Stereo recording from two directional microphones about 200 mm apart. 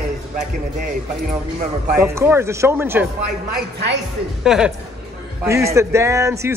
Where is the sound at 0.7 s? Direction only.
40° right (ahead or behind).